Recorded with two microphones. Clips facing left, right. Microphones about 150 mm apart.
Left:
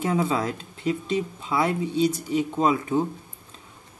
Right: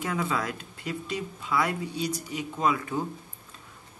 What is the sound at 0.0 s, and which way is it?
Speech, 30° left (ahead or behind).